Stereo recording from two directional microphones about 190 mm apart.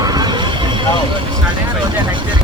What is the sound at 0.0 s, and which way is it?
Neigh, 20° right (ahead or behind).